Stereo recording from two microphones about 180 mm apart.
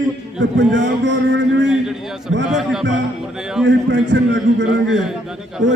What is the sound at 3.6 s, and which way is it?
A man's voice, 90° right.